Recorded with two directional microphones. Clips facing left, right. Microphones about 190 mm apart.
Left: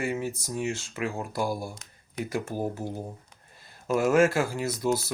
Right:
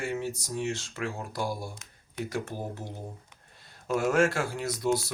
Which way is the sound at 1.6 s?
40° left (ahead or behind).